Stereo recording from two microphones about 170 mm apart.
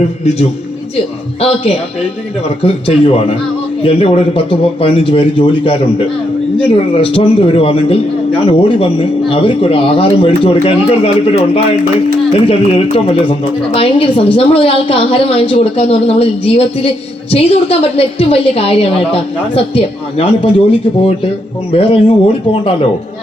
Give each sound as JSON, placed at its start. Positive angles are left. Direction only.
{"t": 1.4, "sound": "a man's voice", "side_deg": 35}